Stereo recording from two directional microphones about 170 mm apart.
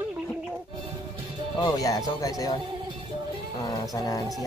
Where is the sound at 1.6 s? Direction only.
20° left (ahead or behind).